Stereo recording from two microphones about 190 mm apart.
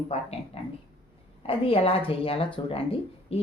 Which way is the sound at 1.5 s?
30° left (ahead or behind).